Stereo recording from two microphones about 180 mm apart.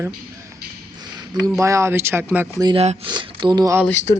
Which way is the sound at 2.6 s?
25° right (ahead or behind).